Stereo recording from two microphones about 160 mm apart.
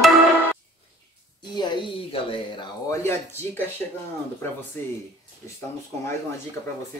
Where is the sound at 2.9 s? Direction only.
15° left (ahead or behind).